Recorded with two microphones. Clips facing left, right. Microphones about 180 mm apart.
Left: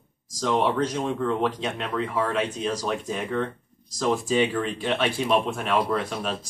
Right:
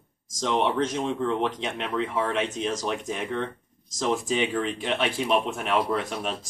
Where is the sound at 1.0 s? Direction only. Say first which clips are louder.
Left 1 dB; 20° right (ahead or behind).